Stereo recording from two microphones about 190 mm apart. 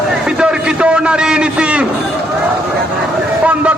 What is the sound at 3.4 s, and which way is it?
Vehicle, 5° right (ahead or behind).